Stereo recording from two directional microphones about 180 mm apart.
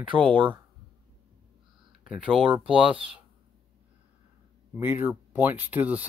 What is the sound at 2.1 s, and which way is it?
Speech, 5° right (ahead or behind).